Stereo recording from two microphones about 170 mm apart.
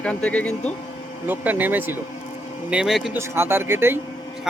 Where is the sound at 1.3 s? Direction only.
10° right (ahead or behind).